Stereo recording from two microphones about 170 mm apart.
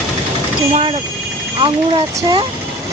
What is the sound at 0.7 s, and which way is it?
Speech, 30° right (ahead or behind).